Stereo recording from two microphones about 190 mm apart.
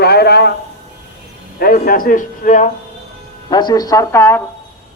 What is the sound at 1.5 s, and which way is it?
A man's voice, 50° left (ahead or behind).